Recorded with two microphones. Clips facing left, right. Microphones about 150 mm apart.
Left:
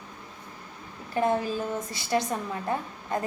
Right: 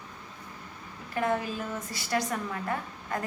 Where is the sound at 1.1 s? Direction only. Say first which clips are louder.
Left 4 dB; 30° left (ahead or behind).